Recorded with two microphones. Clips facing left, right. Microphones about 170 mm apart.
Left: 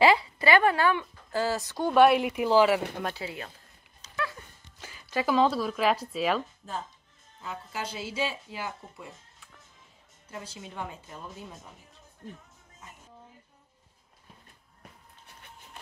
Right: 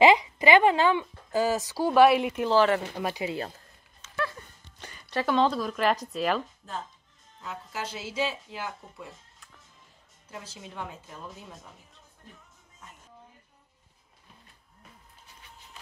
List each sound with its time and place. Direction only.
0.0 s speech: 20° right (ahead or behind)
1.7 s speech: 5° right (ahead or behind)
3.0 s speech: 10° right (ahead or behind)
3.3 s speech: 35° right (ahead or behind)
4.2 s a sound: 5° left (ahead or behind)
7.4 s speech: centre (ahead or behind)
15.2 s music: 60° left (ahead or behind)